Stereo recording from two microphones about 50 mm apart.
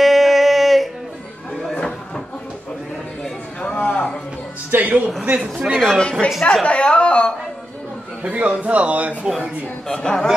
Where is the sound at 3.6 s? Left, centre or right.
Left.